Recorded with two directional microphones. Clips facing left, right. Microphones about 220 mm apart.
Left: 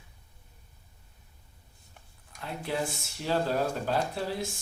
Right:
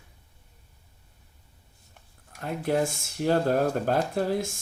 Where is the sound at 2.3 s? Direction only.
50° right (ahead or behind).